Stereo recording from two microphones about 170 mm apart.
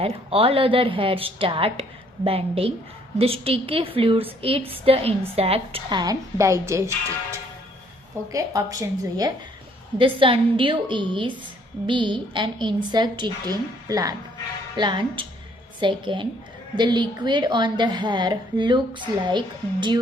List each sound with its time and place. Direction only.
0.0 s a woman's voice: 35° right (ahead or behind)